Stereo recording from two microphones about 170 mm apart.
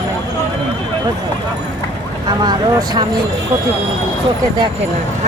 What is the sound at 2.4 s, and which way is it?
Speech, 25° right (ahead or behind).